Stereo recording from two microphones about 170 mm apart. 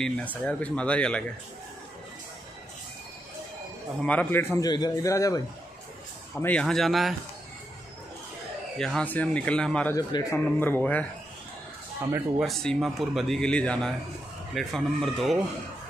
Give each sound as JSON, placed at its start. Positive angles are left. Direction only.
{"t": 0.4, "sound": "speech", "side_deg": 10}
{"t": 4.0, "sound": "speech", "side_deg": 10}
{"t": 4.6, "sound": "a man's voice", "side_deg": 25}
{"t": 8.7, "sound": "speech", "side_deg": 5}
{"t": 9.9, "sound": "speech", "side_deg": 15}
{"t": 12.4, "sound": "a man's voice", "side_deg": 0}